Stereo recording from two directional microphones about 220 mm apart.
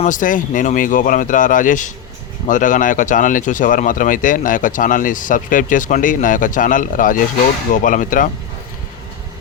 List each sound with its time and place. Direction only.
0.0 s speech: 35° left (ahead or behind)